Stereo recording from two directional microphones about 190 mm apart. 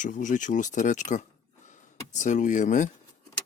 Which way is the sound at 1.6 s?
40° left (ahead or behind).